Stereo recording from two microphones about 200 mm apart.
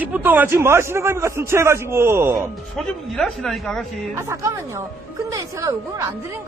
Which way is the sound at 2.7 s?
Centre (ahead or behind).